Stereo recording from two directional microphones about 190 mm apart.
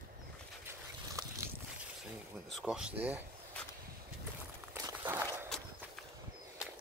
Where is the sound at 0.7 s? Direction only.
15° right (ahead or behind).